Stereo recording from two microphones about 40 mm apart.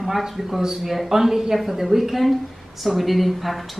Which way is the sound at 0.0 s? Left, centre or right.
Centre.